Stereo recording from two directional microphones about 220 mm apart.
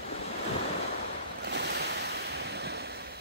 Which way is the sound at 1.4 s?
50° right (ahead or behind).